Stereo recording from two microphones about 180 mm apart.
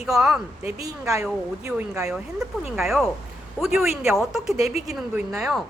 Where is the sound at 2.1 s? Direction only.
Centre (ahead or behind).